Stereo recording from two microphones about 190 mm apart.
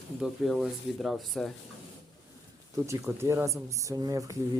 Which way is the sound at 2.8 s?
15° right (ahead or behind).